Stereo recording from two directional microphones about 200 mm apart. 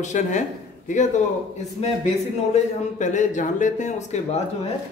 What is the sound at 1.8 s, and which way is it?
Speech, 30° left (ahead or behind).